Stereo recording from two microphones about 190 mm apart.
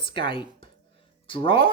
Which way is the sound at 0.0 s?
25° left (ahead or behind).